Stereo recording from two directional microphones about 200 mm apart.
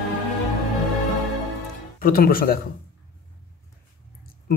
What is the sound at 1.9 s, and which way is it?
Speech, 45° left (ahead or behind).